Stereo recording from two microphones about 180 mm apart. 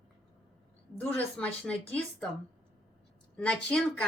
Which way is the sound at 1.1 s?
10° left (ahead or behind).